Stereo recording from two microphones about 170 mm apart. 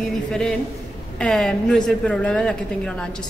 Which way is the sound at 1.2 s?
5° left (ahead or behind).